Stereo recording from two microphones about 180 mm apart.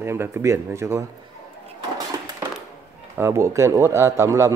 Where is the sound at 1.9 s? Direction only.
20° right (ahead or behind).